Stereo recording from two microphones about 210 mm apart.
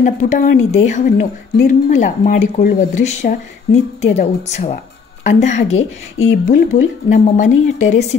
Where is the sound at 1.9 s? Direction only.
35° left (ahead or behind).